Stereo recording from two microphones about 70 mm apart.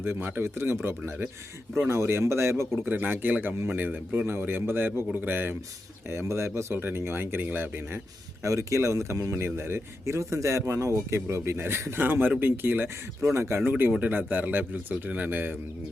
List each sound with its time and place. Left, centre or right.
0.0 s speech: right
1.9 s speech: right
2.8 s a man's voice: right
8.4 s speech: right
13.3 s speech: right
13.7 s a man's voice: right